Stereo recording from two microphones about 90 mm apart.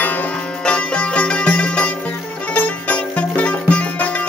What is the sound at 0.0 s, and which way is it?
Music, 20° left (ahead or behind).